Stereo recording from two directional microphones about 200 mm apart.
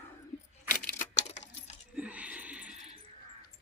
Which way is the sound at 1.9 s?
5° right (ahead or behind).